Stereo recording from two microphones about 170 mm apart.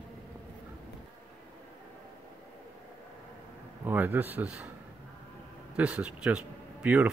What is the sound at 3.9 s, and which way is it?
Speech, 10° right (ahead or behind).